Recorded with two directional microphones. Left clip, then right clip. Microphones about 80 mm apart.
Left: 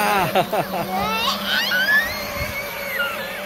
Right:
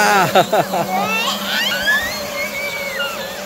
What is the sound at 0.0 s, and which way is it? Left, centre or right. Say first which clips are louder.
Speech: right 6 dB; right.